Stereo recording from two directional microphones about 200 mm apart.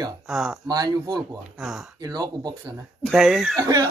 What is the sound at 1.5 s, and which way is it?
Speech, centre (ahead or behind).